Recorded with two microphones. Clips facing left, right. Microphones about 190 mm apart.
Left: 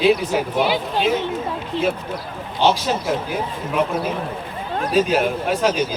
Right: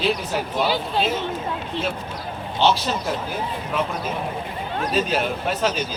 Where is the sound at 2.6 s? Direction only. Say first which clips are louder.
Left 2 dB; 15° left (ahead or behind).